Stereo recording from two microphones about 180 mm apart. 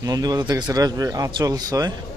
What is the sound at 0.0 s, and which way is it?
Speech, 20° right (ahead or behind).